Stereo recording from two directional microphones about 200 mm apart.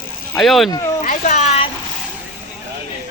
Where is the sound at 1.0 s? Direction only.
40° left (ahead or behind).